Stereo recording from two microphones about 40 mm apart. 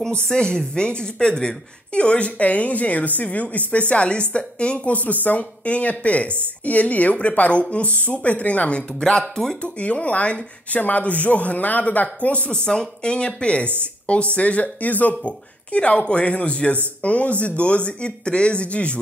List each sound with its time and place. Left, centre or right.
0.3 s speech: centre
12.6 s speech: left
15.7 s speech: left